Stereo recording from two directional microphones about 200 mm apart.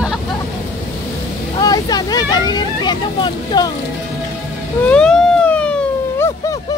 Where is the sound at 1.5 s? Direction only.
20° left (ahead or behind).